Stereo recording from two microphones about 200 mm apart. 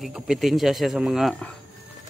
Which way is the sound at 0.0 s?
Centre (ahead or behind).